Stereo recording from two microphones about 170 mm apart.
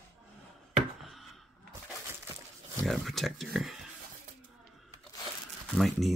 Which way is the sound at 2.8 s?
Centre (ahead or behind).